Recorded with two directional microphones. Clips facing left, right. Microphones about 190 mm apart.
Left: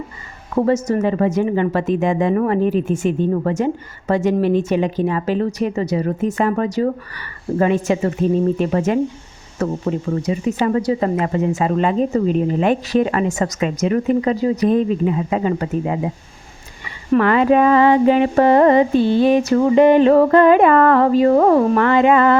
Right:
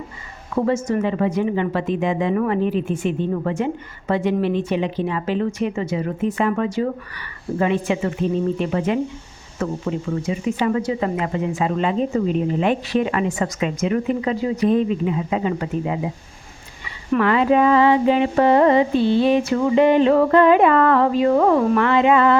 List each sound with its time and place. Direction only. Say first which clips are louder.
0.5 s a woman's voice: left 3 dB; 40° left (ahead or behind)
17.1 s a woman's voice: left 3 dB; 45° left (ahead or behind)